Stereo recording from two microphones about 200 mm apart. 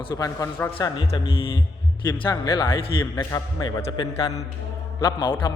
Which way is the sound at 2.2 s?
20° left (ahead or behind).